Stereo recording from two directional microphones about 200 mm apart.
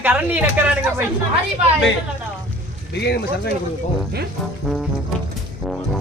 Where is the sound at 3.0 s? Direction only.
55° left (ahead or behind).